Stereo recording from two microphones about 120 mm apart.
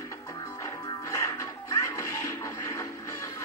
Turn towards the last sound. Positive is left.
turn(degrees=25)  # may be behind; listen again after turning